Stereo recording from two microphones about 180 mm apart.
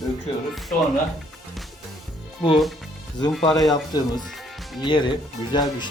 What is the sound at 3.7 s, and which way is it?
Speech, 20° left (ahead or behind).